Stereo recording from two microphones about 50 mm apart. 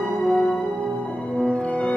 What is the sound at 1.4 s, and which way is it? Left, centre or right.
Music, left.